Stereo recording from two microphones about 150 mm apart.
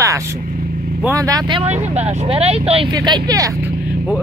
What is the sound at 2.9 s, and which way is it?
Speech, 30° right (ahead or behind).